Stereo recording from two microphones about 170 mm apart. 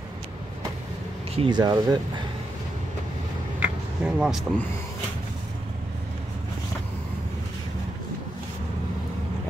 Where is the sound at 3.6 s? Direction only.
5° right (ahead or behind).